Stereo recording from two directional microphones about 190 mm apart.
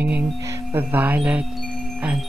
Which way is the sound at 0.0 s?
10° right (ahead or behind).